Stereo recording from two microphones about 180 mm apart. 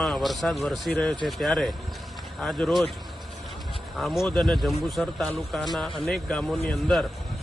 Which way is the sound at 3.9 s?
Centre (ahead or behind).